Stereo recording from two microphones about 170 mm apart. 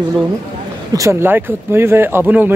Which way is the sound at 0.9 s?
15° right (ahead or behind).